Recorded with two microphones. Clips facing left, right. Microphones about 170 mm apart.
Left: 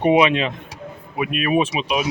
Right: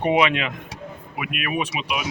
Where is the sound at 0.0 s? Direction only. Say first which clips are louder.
Left 4 dB; 20° left (ahead or behind).